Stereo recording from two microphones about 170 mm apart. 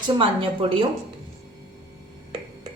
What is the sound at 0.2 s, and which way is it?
Speech, 30° right (ahead or behind).